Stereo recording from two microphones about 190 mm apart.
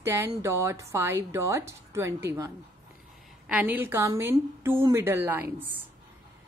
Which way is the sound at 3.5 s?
10° right (ahead or behind).